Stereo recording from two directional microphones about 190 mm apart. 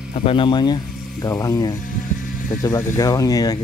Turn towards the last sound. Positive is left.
turn(degrees=20)  # may be behind; listen again after turning